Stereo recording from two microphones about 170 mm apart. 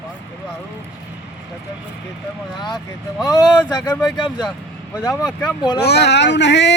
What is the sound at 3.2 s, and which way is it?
A man's voice, 20° left (ahead or behind).